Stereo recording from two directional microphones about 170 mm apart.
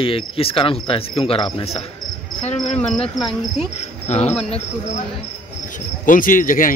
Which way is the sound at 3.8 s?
40° left (ahead or behind).